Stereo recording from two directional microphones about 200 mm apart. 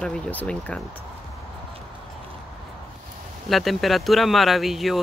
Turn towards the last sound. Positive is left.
turn(degrees=0)  # may be behind; listen again after turning